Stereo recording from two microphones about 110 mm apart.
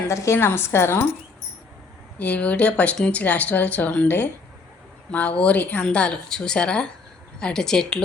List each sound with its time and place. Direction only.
0.1 s a woman's voice: 25° left (ahead or behind)
2.1 s a woman's voice: 15° left (ahead or behind)